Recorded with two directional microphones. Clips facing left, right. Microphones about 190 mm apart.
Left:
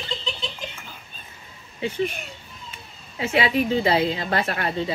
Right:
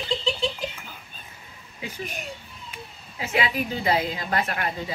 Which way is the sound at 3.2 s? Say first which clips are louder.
Left 5 dB; 30° left (ahead or behind).